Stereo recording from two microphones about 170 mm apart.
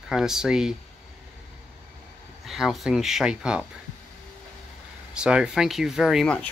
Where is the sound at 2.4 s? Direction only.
Centre (ahead or behind).